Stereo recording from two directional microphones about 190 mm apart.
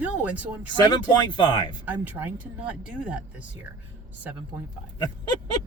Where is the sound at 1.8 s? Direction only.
10° right (ahead or behind).